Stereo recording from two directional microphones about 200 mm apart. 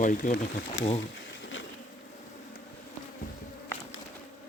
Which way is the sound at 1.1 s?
65° left (ahead or behind).